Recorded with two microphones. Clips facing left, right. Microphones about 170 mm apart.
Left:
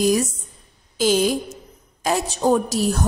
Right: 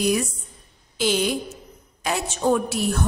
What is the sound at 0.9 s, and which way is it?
A woman's voice, 40° left (ahead or behind).